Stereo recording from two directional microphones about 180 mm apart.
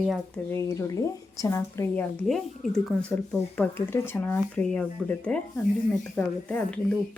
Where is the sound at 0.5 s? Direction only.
15° left (ahead or behind).